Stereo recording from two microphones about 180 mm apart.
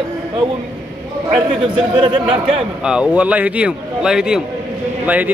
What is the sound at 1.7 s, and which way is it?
Speech, 30° right (ahead or behind).